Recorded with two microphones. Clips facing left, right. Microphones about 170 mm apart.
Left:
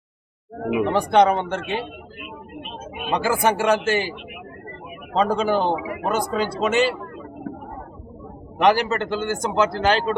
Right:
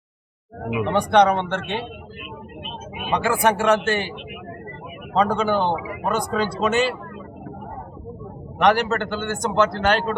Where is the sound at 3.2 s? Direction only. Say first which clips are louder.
Right 1 dB; centre (ahead or behind).